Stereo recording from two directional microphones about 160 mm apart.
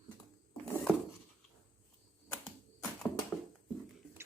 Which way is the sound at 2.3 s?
10° left (ahead or behind).